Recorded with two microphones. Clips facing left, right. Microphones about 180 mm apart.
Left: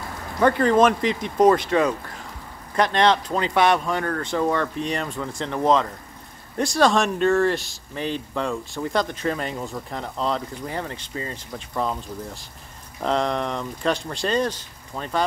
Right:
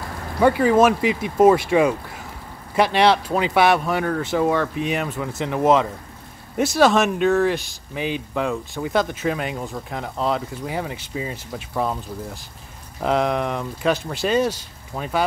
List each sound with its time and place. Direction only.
0.4 s speech: 10° right (ahead or behind)
13.0 s speech: 5° right (ahead or behind)